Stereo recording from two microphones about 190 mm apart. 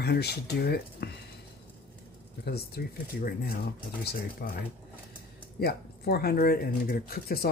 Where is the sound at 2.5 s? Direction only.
55° left (ahead or behind).